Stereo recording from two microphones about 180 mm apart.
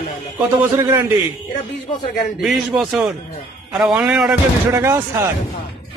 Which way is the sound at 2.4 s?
Centre (ahead or behind).